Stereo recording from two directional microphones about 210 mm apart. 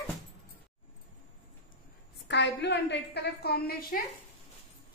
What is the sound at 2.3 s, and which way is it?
A woman's voice, 55° left (ahead or behind).